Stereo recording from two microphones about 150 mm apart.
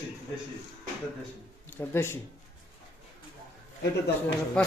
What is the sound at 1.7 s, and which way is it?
Speech, 15° left (ahead or behind).